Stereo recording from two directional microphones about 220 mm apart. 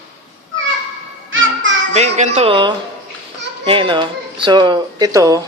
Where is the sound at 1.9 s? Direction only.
30° right (ahead or behind).